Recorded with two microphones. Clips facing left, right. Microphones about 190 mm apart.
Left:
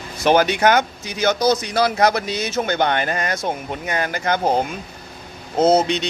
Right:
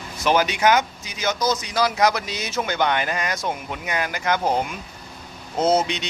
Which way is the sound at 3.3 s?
30° left (ahead or behind).